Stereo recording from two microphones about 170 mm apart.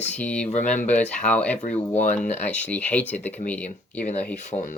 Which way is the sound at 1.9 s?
50° left (ahead or behind).